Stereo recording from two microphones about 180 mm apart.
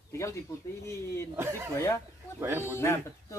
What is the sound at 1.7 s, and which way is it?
Speech, 15° left (ahead or behind).